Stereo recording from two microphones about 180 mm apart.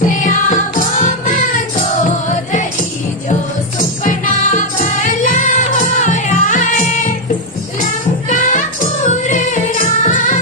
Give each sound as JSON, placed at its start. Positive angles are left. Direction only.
{"t": 0.0, "sound": "music", "side_deg": 45}
{"t": 4.0, "sound": "music", "side_deg": 45}